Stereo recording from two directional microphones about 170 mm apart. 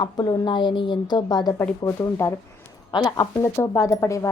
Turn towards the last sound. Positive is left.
turn(degrees=20)  # may be behind; listen again after turning